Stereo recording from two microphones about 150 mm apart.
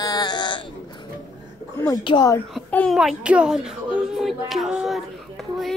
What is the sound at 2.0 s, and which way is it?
Speech, 30° left (ahead or behind).